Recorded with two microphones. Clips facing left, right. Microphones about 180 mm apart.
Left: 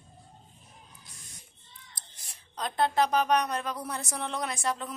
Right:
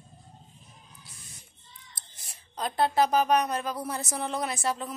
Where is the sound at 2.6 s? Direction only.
5° right (ahead or behind).